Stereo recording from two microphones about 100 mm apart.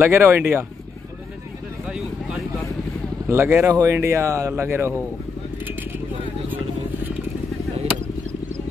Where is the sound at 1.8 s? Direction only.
10° right (ahead or behind).